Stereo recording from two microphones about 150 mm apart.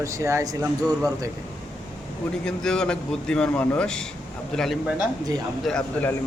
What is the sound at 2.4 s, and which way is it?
A man's voice, 5° left (ahead or behind).